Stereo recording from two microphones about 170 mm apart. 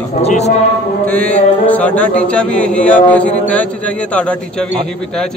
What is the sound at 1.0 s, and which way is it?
Chant, 10° left (ahead or behind).